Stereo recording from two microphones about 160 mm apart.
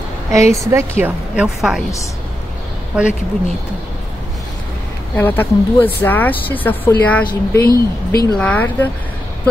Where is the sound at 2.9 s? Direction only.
5° right (ahead or behind).